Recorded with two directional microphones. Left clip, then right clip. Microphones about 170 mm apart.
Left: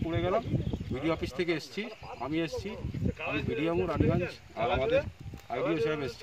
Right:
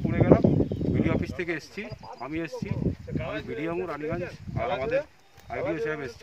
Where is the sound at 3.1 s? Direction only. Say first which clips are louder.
Even; 55° left (ahead or behind).